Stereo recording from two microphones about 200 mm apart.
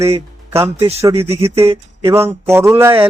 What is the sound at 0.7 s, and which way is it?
Speech, 30° right (ahead or behind).